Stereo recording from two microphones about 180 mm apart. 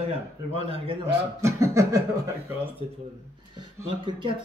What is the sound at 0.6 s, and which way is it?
Speech, 30° right (ahead or behind).